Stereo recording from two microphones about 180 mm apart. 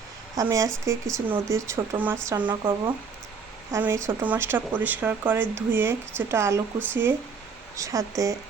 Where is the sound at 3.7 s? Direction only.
15° right (ahead or behind).